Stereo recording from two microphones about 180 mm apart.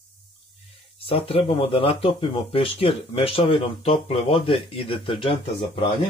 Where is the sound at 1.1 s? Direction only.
30° left (ahead or behind).